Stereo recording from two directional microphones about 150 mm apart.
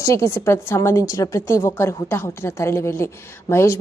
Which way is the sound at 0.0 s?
20° left (ahead or behind).